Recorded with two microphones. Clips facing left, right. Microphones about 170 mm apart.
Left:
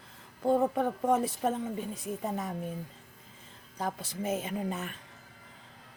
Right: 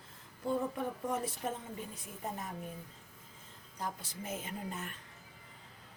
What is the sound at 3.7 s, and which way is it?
A woman's voice, 75° left (ahead or behind).